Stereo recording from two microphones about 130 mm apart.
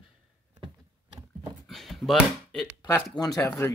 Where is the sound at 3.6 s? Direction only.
15° left (ahead or behind).